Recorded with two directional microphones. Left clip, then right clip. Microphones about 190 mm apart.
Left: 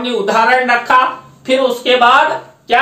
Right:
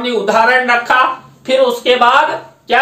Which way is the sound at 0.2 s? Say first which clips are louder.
Even; 15° right (ahead or behind).